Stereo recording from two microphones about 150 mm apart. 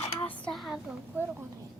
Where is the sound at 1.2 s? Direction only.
15° right (ahead or behind).